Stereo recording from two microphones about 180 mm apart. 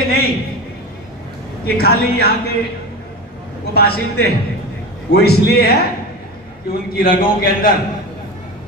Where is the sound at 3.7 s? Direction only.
60° left (ahead or behind).